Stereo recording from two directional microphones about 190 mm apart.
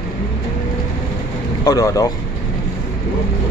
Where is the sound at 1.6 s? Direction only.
20° left (ahead or behind).